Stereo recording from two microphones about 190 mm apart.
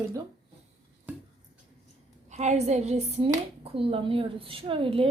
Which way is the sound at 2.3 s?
35° right (ahead or behind).